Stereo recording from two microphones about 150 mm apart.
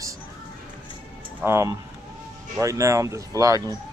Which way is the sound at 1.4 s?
15° right (ahead or behind).